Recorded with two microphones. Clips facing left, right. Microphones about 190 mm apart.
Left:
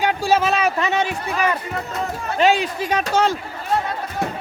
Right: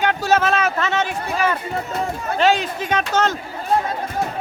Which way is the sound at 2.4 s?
10° left (ahead or behind).